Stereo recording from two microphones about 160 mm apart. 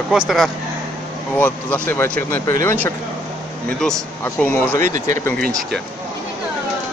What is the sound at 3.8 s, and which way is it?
Speech, 5° left (ahead or behind).